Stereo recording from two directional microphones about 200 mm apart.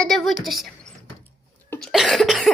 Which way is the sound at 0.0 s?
Centre (ahead or behind).